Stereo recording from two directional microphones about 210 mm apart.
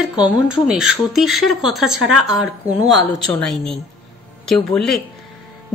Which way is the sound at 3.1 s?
Centre (ahead or behind).